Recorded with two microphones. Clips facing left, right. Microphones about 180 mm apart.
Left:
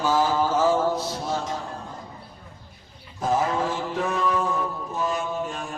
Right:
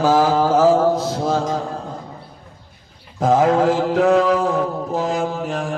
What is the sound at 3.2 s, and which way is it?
Mantra, 90° right.